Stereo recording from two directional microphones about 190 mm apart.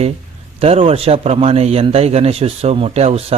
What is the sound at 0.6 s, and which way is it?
A man's voice, 30° right (ahead or behind).